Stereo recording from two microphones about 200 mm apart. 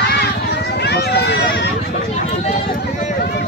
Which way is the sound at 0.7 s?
55° left (ahead or behind).